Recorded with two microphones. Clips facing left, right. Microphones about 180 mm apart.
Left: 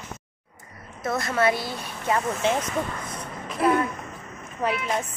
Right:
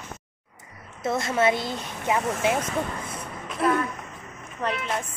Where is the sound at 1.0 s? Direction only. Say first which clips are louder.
Right 1 dB; 25° right (ahead or behind).